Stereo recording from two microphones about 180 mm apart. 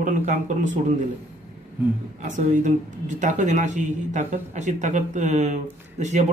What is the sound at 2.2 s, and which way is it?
A man's voice, 45° right (ahead or behind).